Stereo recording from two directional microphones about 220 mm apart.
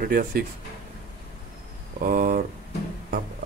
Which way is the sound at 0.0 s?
40° right (ahead or behind).